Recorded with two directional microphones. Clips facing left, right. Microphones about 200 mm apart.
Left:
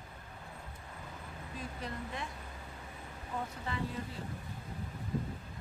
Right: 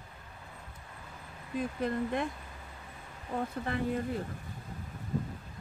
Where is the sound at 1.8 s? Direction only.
55° right (ahead or behind).